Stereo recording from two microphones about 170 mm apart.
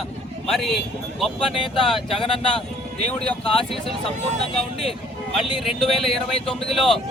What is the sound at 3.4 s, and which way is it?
Speech, 30° left (ahead or behind).